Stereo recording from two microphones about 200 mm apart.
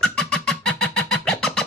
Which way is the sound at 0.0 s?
5° left (ahead or behind).